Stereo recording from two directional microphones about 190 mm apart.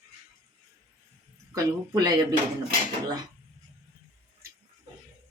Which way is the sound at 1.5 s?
20° right (ahead or behind).